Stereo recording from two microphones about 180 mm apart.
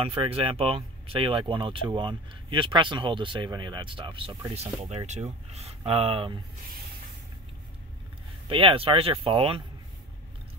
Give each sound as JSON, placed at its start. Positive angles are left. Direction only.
{"t": 0.0, "sound": "speech", "side_deg": -30}
{"t": 8.5, "sound": "speech", "side_deg": -30}